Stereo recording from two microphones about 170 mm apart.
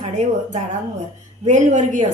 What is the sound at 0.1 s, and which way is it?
A woman's voice, 45° right (ahead or behind).